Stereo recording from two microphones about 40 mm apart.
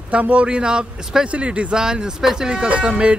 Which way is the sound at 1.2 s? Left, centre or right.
Right.